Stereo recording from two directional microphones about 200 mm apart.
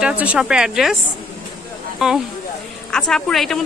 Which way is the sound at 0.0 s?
5° right (ahead or behind).